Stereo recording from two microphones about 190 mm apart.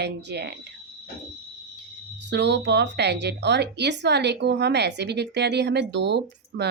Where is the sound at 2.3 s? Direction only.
65° right (ahead or behind).